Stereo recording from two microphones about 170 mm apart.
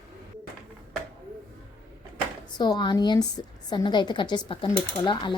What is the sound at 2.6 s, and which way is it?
A woman's voice, 25° left (ahead or behind).